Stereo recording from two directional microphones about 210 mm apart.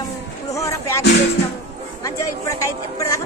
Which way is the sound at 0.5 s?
15° left (ahead or behind).